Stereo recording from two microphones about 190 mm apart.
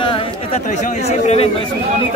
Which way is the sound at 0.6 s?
40° left (ahead or behind).